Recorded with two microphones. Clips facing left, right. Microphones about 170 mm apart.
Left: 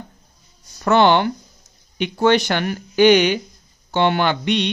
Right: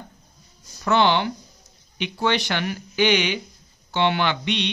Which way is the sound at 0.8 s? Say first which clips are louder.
Left 5 dB; 50° left (ahead or behind).